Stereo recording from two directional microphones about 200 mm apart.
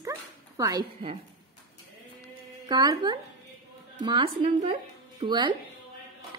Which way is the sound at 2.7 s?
20° right (ahead or behind).